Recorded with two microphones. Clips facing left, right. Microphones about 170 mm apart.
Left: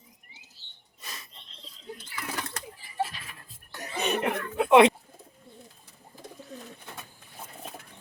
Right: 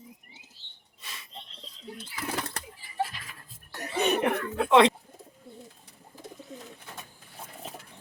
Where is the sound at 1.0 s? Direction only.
40° left (ahead or behind).